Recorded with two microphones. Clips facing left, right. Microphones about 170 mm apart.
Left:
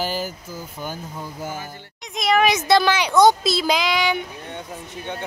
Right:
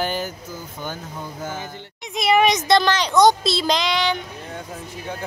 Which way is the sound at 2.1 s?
5° right (ahead or behind).